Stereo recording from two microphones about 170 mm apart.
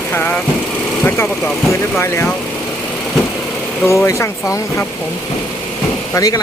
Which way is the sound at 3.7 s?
15° left (ahead or behind).